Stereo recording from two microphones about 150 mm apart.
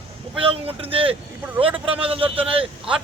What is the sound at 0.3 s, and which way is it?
A man's voice, 40° right (ahead or behind).